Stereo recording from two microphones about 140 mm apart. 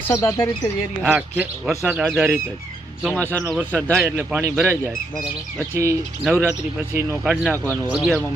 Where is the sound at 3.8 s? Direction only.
15° right (ahead or behind).